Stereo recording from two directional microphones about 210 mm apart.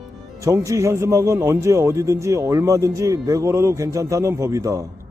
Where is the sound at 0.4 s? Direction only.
15° right (ahead or behind).